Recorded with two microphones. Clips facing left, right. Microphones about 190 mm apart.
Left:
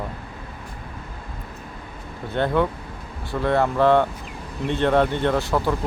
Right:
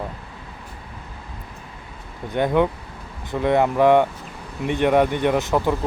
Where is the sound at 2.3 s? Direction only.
15° right (ahead or behind).